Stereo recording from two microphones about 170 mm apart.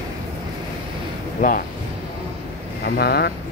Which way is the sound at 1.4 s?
50° left (ahead or behind).